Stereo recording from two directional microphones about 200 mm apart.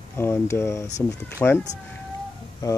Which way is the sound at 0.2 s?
15° left (ahead or behind).